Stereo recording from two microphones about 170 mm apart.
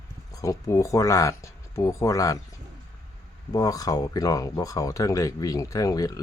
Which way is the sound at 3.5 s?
20° left (ahead or behind).